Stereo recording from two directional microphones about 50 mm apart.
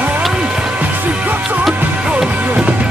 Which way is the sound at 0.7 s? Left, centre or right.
Right.